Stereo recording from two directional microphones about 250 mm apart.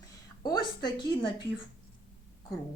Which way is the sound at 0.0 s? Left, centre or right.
Centre.